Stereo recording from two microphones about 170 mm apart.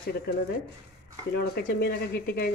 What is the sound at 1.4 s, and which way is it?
Speech, 65° left (ahead or behind).